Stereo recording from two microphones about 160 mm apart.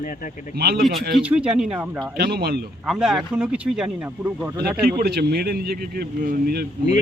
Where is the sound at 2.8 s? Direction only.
Centre (ahead or behind).